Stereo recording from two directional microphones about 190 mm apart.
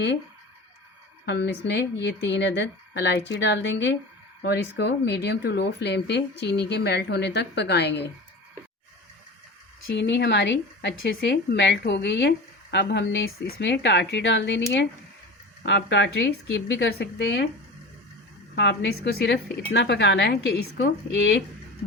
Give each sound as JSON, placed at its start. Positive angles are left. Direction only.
{"t": 1.2, "sound": "speech", "side_deg": 60}
{"t": 9.9, "sound": "speech", "side_deg": 65}
{"t": 18.5, "sound": "speech", "side_deg": 65}